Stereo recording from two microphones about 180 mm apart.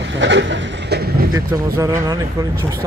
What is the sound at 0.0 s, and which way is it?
Vehicle, 85° right.